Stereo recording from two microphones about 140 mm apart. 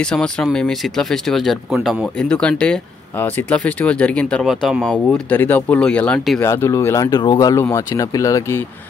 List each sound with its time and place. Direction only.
0.0 s speech: 5° left (ahead or behind)
6.4 s speech: 20° left (ahead or behind)